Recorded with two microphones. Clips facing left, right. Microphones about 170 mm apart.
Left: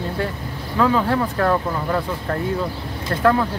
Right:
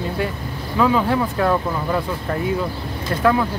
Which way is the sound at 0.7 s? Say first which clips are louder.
Right 1 dB; 10° right (ahead or behind).